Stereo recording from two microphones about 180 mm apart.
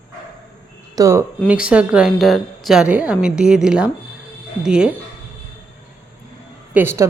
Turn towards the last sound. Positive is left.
turn(degrees=-15)  # may be behind; listen again after turning